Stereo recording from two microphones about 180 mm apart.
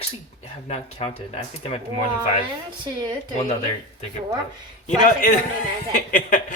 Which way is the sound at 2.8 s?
25° right (ahead or behind).